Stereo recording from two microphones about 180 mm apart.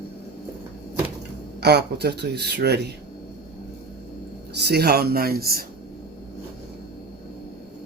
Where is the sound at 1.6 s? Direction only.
65° right (ahead or behind).